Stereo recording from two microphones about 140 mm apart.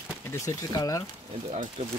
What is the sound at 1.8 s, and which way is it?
Speech, 50° right (ahead or behind).